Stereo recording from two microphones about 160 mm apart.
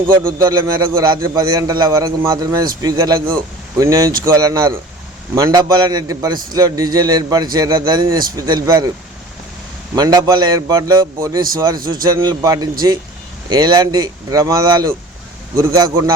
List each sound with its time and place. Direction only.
0.3 s a man's voice: 20° right (ahead or behind)
9.9 s a man's voice: 25° right (ahead or behind)